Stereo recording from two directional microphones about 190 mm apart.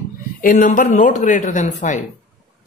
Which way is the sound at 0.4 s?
45° left (ahead or behind).